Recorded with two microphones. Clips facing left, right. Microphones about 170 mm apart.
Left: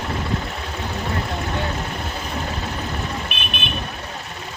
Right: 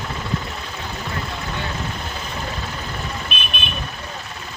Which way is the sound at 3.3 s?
65° left (ahead or behind).